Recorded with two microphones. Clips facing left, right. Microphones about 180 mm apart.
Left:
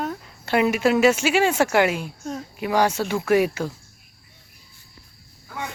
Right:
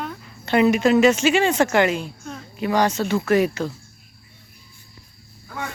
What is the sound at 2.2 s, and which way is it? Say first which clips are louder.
Speech: left 5 dB; 40° left (ahead or behind).